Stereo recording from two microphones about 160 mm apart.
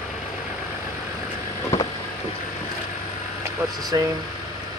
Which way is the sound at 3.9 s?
25° right (ahead or behind).